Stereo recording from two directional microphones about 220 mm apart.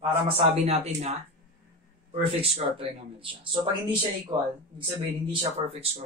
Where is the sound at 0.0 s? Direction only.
20° right (ahead or behind).